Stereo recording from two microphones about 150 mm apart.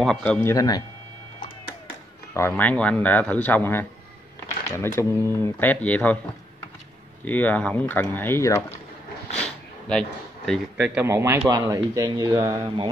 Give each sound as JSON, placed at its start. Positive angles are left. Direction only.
{"t": 0.0, "sound": "speech", "side_deg": 5}
{"t": 0.5, "sound": "speech", "side_deg": 25}
{"t": 2.3, "sound": "speech", "side_deg": 15}
{"t": 7.2, "sound": "speech", "side_deg": 10}
{"t": 9.4, "sound": "a sound", "side_deg": 5}
{"t": 11.0, "sound": "a man's voice", "side_deg": -15}